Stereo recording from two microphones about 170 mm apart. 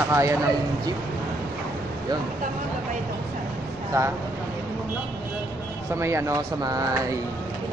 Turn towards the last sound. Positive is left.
turn(degrees=-20)  # may be behind; listen again after turning